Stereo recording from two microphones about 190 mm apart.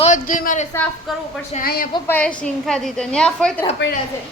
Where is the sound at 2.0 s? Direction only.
10° left (ahead or behind).